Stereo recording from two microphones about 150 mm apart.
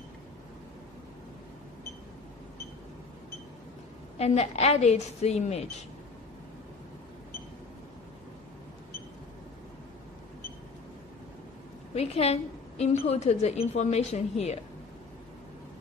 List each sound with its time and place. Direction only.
4.2 s a woman's voice: 45° left (ahead or behind)
11.9 s a woman's voice: 45° left (ahead or behind)